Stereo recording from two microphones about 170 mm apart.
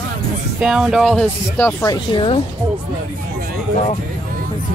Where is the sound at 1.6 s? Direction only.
20° left (ahead or behind).